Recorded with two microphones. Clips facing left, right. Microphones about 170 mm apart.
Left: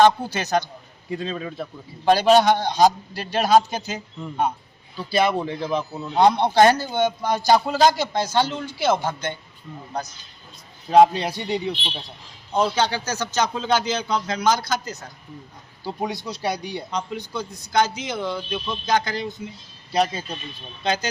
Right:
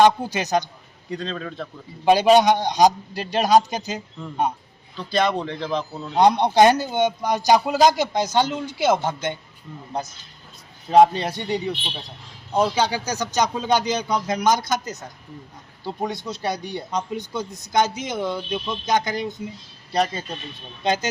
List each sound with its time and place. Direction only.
0.0 s speech: 15° right (ahead or behind)
1.1 s speech: 5° left (ahead or behind)
2.0 s speech: 10° right (ahead or behind)
4.9 s speech: 5° left (ahead or behind)
6.1 s speech: 15° right (ahead or behind)
10.8 s speech: centre (ahead or behind)
12.5 s speech: 10° right (ahead or behind)
15.8 s speech: centre (ahead or behind)
16.9 s a man's voice: 20° right (ahead or behind)
19.9 s speech: centre (ahead or behind)
20.8 s a man's voice: 20° right (ahead or behind)